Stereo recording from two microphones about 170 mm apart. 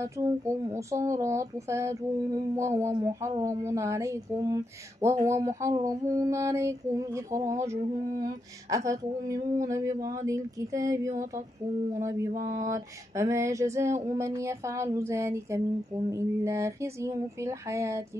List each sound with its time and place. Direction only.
0.0 s female singing: 15° right (ahead or behind)
8.2 s speech: 20° right (ahead or behind)
11.9 s female singing: 15° right (ahead or behind)